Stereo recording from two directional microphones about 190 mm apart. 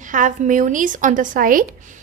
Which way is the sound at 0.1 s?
45° right (ahead or behind).